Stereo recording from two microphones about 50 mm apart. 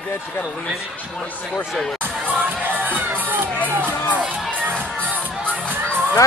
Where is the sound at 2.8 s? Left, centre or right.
Right.